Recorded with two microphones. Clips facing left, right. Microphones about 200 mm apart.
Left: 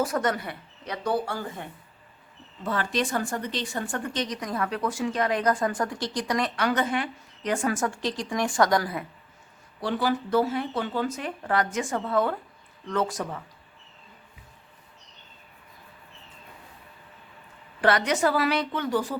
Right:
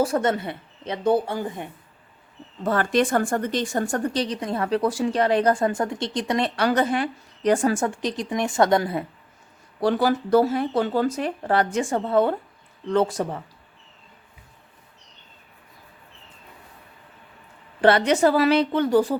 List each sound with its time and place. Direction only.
0.0 s speech: 30° right (ahead or behind)
2.6 s speech: 50° right (ahead or behind); by 9.0 s 25° right (ahead or behind)
9.8 s speech: 40° right (ahead or behind)
17.7 s speech: 30° right (ahead or behind)